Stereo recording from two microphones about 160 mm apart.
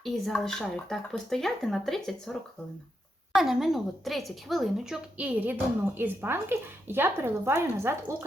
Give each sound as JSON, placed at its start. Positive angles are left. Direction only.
{"t": 0.0, "sound": "speech", "side_deg": 0}
{"t": 3.3, "sound": "a woman's voice", "side_deg": 0}